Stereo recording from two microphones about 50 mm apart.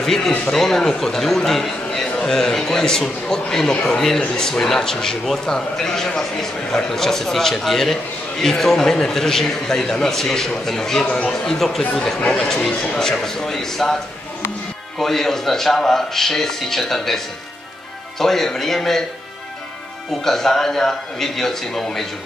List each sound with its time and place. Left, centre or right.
0.0 s a man's voice: centre
12.5 s speech: left
13.2 s a man's voice: centre
15.0 s a man's voice: centre
18.2 s a man's voice: centre
20.2 s a man's voice: centre